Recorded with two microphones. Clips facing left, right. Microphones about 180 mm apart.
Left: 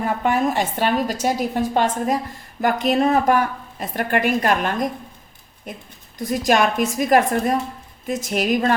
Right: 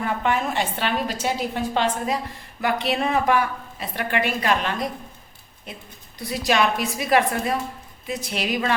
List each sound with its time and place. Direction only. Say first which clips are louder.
0.0 s a woman's voice: left 4 dB; 40° left (ahead or behind)
6.1 s a woman's voice: left 4 dB; 45° left (ahead or behind)